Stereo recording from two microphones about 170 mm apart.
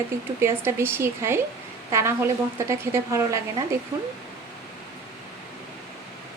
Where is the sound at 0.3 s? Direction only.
15° right (ahead or behind).